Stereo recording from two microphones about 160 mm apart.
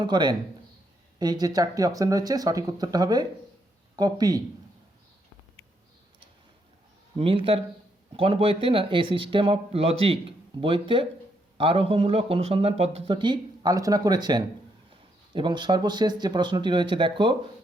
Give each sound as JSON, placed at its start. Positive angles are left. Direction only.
{"t": 0.0, "sound": "speech", "side_deg": -30}
{"t": 7.2, "sound": "speech", "side_deg": -35}